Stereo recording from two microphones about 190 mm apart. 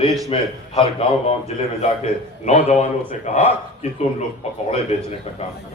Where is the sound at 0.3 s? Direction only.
30° left (ahead or behind).